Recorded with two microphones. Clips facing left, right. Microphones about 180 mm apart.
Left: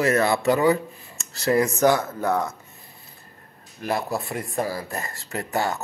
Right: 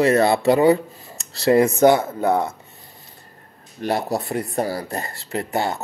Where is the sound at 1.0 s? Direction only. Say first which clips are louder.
Right 6 dB; 35° right (ahead or behind).